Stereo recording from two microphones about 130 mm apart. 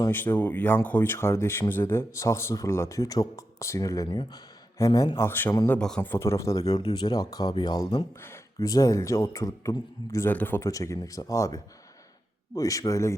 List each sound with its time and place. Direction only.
0.1 s speech: 15° left (ahead or behind); by 8.0 s 35° left (ahead or behind)
8.1 s speech: 20° left (ahead or behind)
10.7 s speech: 25° left (ahead or behind)